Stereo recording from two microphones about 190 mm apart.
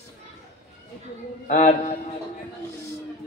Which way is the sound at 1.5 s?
40° left (ahead or behind).